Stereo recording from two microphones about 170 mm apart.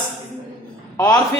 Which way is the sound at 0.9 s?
20° left (ahead or behind).